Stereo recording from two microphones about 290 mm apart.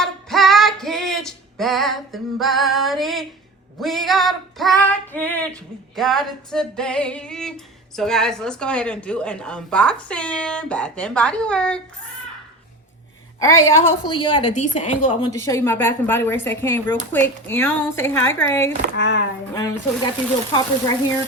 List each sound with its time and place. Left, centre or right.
0.0 s female singing: centre
13.4 s a woman's voice: centre
18.9 s speech: left
19.5 s a woman's voice: centre